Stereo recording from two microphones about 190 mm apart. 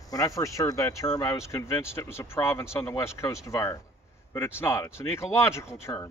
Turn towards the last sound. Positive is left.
turn(degrees=15)  # may be behind; listen again after turning